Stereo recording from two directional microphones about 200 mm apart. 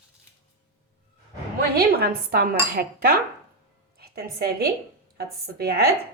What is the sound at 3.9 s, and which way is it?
A woman's voice, 50° right (ahead or behind).